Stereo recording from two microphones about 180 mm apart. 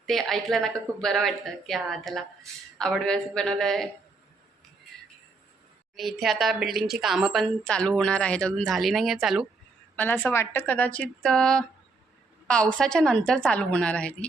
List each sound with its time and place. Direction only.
0.1 s a woman's voice: centre (ahead or behind)
6.0 s a woman's voice: centre (ahead or behind)
9.9 s a woman's voice: 10° left (ahead or behind)